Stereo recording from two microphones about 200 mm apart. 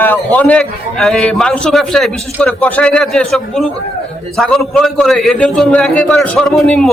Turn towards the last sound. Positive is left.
turn(degrees=5)  # may be behind; listen again after turning